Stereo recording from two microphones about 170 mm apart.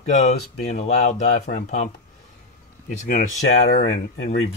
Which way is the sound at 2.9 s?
50° left (ahead or behind).